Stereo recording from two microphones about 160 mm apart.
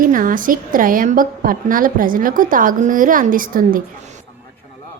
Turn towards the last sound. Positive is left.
turn(degrees=-55)  # may be behind; listen again after turning